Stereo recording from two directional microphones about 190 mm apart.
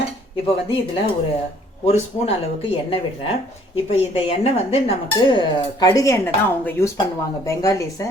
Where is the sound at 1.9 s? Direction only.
30° left (ahead or behind).